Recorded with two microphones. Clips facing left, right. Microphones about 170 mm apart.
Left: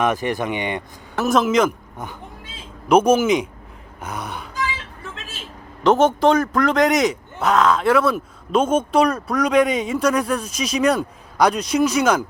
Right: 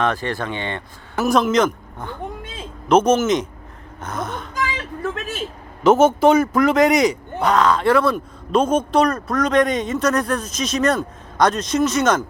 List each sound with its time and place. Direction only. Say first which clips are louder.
0.0 s speech: left 1 dB; 15° left (ahead or behind)
1.1 s speech: even; centre (ahead or behind)
4.0 s gasp: right 3 dB; 10° left (ahead or behind)
5.8 s speech: right 2 dB; 5° right (ahead or behind)